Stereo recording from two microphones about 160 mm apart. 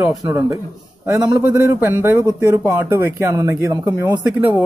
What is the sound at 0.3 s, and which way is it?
Speech, 15° right (ahead or behind).